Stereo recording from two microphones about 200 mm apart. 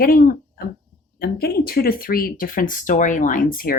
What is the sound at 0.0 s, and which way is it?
Speech, 45° left (ahead or behind).